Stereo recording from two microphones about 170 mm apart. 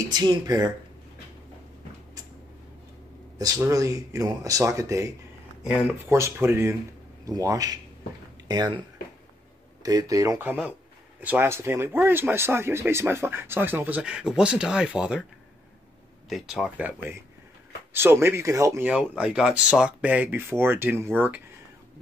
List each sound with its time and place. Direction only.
0.1 s speech: 25° right (ahead or behind)
3.3 s speech: 20° right (ahead or behind)
9.8 s speech: 20° right (ahead or behind); by 15.1 s 5° right (ahead or behind)
16.3 s speech: centre (ahead or behind)